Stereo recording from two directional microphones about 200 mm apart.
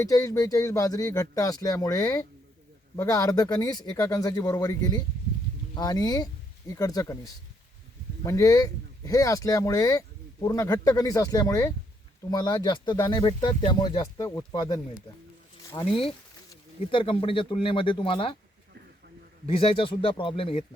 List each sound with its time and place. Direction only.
0.0 s speech: 15° left (ahead or behind)
8.2 s speech: 15° left (ahead or behind)
16.9 s speech: 25° left (ahead or behind)
19.5 s speech: 25° left (ahead or behind)